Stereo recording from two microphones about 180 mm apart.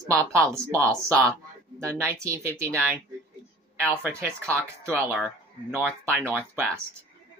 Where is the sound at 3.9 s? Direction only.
15° right (ahead or behind).